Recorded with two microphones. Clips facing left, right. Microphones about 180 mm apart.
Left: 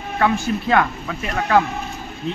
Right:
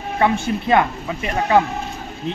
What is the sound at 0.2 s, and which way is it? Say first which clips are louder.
Speech: right 1 dB; 20° right (ahead or behind).